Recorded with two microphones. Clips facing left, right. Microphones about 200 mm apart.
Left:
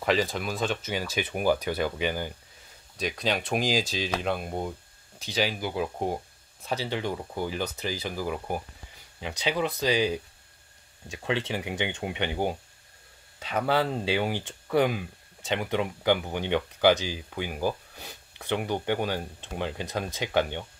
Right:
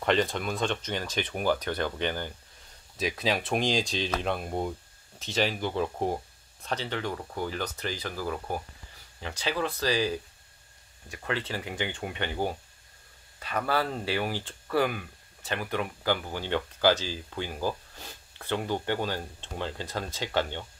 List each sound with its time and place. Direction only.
0.0 s speech: 5° left (ahead or behind)
3.0 s speech: centre (ahead or behind)